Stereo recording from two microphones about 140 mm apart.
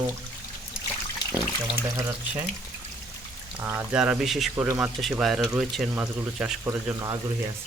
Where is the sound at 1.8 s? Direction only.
20° right (ahead or behind).